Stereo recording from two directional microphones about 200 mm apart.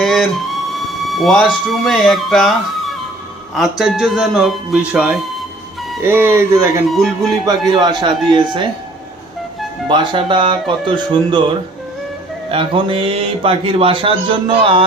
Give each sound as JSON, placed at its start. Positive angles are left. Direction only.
{"t": 0.0, "sound": "a sound", "side_deg": 0}
{"t": 1.2, "sound": "speech", "side_deg": 0}
{"t": 3.5, "sound": "speech", "side_deg": 0}
{"t": 9.9, "sound": "speech", "side_deg": -25}
{"t": 12.5, "sound": "speech", "side_deg": -25}